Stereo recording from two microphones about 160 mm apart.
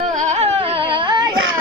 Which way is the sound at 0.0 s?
50° right (ahead or behind).